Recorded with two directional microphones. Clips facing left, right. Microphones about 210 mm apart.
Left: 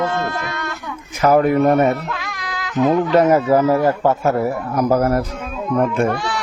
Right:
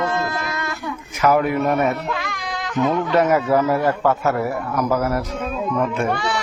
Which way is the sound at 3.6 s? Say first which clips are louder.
Left 3 dB; 10° left (ahead or behind).